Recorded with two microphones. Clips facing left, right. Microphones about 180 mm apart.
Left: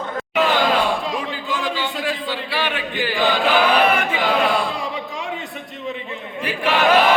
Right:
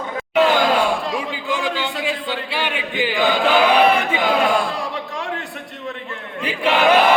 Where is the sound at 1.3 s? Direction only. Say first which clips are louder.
Right 2 dB; 10° right (ahead or behind).